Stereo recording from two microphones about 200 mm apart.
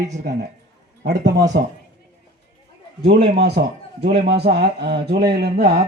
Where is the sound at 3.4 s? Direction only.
55° right (ahead or behind).